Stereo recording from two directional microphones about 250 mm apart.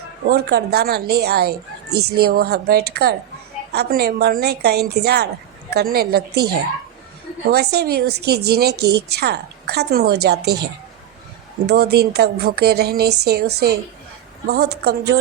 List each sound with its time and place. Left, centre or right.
0.3 s a woman's voice: right